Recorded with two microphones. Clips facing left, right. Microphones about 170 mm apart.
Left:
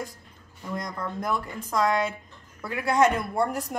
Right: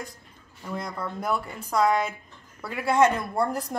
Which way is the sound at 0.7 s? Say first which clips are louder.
Even; 5° right (ahead or behind).